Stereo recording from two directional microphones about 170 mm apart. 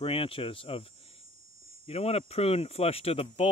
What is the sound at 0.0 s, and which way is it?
Speech, 35° left (ahead or behind).